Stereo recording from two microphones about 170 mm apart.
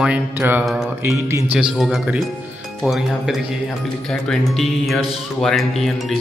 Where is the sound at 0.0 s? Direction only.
10° right (ahead or behind).